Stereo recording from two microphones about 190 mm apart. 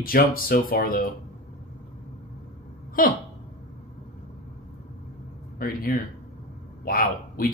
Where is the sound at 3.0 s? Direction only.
45° left (ahead or behind).